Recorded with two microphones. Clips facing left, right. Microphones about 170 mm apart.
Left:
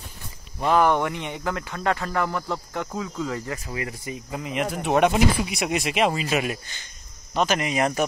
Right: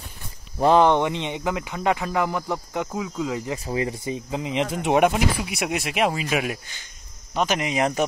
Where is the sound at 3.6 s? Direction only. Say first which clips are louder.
Right 6 dB; 25° right (ahead or behind).